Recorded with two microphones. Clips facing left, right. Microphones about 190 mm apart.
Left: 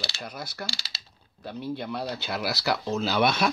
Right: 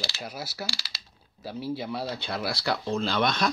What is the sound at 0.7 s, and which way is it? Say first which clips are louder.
Speech: even; 25° left (ahead or behind).